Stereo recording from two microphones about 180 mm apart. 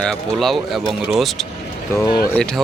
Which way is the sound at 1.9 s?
15° left (ahead or behind).